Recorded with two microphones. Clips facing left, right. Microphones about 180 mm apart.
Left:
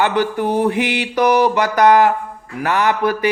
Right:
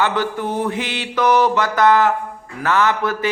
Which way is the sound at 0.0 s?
15° left (ahead or behind).